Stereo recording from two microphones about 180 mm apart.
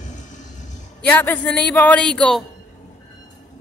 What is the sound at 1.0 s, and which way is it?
Speech, 10° left (ahead or behind).